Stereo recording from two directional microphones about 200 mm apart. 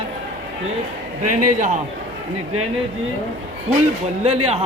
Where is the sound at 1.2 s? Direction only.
40° right (ahead or behind).